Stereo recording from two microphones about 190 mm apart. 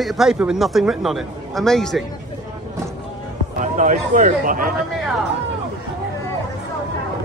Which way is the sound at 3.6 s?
40° right (ahead or behind).